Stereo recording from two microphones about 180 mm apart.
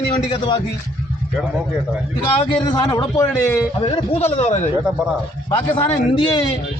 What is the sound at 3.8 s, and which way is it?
A man's voice, 35° left (ahead or behind).